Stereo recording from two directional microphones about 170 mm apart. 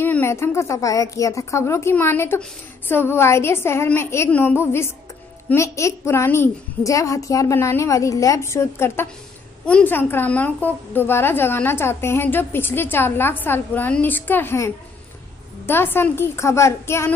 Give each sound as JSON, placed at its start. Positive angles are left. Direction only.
{"t": 0.0, "sound": "a woman's voice", "side_deg": 15}